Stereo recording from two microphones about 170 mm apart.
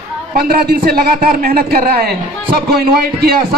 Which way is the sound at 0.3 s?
65° right (ahead or behind).